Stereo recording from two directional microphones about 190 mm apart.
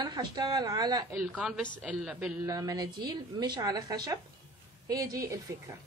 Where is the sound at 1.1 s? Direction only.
5° right (ahead or behind).